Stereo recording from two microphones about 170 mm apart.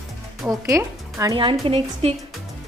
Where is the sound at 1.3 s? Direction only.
30° right (ahead or behind).